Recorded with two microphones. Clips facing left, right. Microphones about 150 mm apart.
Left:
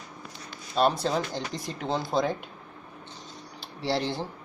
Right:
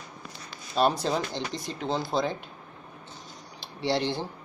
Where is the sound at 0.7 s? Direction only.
Centre (ahead or behind).